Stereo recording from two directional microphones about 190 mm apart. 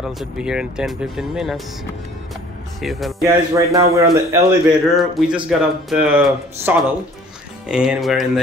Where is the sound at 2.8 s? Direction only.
Centre (ahead or behind).